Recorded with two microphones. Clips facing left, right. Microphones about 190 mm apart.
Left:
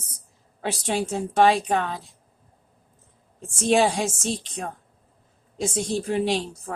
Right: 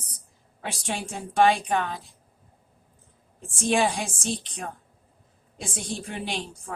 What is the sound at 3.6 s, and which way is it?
A woman's voice, 25° left (ahead or behind).